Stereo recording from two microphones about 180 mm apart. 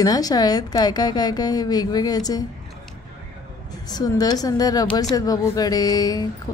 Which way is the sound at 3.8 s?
20° left (ahead or behind).